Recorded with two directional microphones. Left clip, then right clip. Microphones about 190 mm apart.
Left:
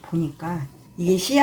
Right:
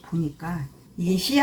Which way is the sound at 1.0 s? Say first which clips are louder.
Left 4 dB; 45° left (ahead or behind).